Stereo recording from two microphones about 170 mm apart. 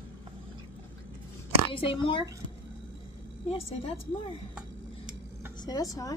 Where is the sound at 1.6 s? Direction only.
30° left (ahead or behind).